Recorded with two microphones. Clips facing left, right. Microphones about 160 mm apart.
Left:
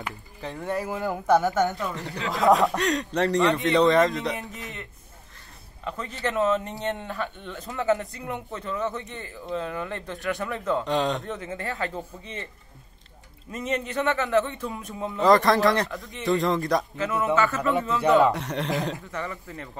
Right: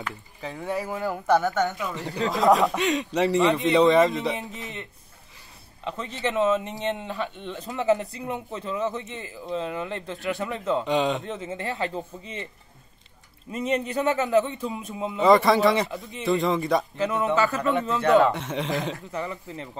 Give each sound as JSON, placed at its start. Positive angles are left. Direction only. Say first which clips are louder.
{"t": 0.4, "sound": "a man's voice", "louder": "even", "side_deg": 0}
{"t": 2.0, "sound": "speech", "louder": "right 4 dB", "side_deg": -40}
{"t": 2.4, "sound": "a man's voice", "louder": "even", "side_deg": 0}
{"t": 5.9, "sound": "a man's voice", "louder": "right 1 dB", "side_deg": -20}
{"t": 9.2, "sound": "a man's voice", "louder": "even", "side_deg": -10}
{"t": 9.6, "sound": "a man's voice", "louder": "right 2 dB", "side_deg": -20}
{"t": 10.8, "sound": "a man's voice", "louder": "right 3 dB", "side_deg": 0}
{"t": 11.2, "sound": "a man's voice", "louder": "right 1 dB", "side_deg": -20}
{"t": 13.5, "sound": "speech", "louder": "right 3 dB", "side_deg": -30}
{"t": 14.0, "sound": "a man's voice", "louder": "right 1 dB", "side_deg": -20}
{"t": 15.1, "sound": "a man's voice", "louder": "right 1 dB", "side_deg": 0}
{"t": 16.9, "sound": "a man's voice", "louder": "right 2 dB", "side_deg": -25}
{"t": 17.6, "sound": "a man's voice", "louder": "even", "side_deg": 5}
{"t": 19.0, "sound": "a man's voice", "louder": "right 2 dB", "side_deg": -15}